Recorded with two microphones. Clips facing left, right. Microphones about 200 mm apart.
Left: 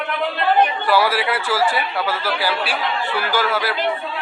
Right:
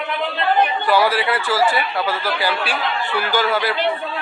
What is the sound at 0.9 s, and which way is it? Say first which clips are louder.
Speech: right 1 dB; 5° left (ahead or behind).